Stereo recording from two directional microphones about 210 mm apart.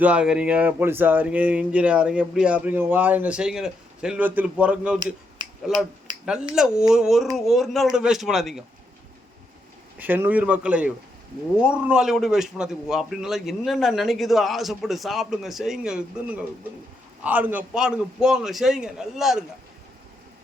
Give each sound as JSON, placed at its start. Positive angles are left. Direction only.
{"t": 0.0, "sound": "speech", "side_deg": -5}
{"t": 5.4, "sound": "finger snapping", "side_deg": -20}
{"t": 6.5, "sound": "speech", "side_deg": -5}
{"t": 10.0, "sound": "a man's voice", "side_deg": -10}